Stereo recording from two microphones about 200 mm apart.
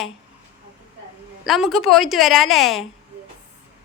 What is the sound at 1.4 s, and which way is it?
A woman's voice, centre (ahead or behind).